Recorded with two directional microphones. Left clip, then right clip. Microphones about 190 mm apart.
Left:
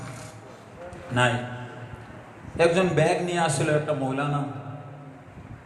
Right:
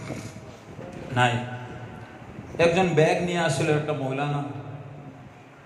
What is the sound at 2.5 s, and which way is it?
A man's voice, 40° left (ahead or behind).